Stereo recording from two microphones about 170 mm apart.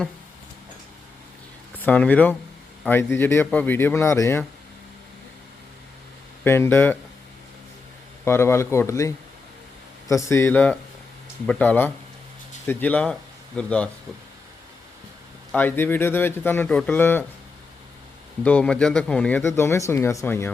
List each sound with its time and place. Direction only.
1.8 s speech: 10° left (ahead or behind)
6.4 s speech: 15° left (ahead or behind)
8.2 s speech: 15° left (ahead or behind)
15.5 s speech: 10° left (ahead or behind)
18.4 s speech: 5° left (ahead or behind)